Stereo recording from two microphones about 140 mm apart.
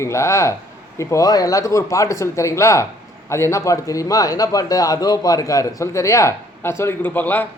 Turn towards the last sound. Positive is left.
turn(degrees=15)  # may be behind; listen again after turning